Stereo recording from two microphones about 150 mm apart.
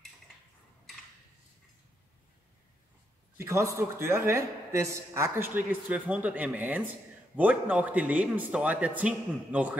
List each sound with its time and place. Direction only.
3.3 s a man's voice: 20° right (ahead or behind)